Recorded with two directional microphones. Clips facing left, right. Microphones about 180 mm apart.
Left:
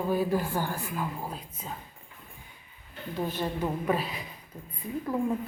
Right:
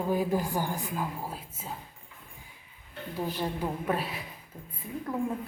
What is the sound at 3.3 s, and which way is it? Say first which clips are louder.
Speech: left 1 dB; 10° right (ahead or behind).